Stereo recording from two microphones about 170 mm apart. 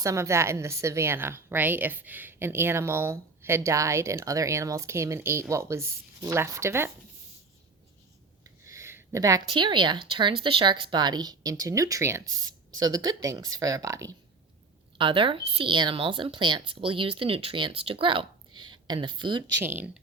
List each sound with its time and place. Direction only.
0.0 s a woman's voice: 15° right (ahead or behind)
8.6 s a sound: 15° right (ahead or behind)
9.5 s speech: 30° right (ahead or behind)
14.9 s speech: 30° right (ahead or behind)
19.6 s a woman's voice: 10° right (ahead or behind)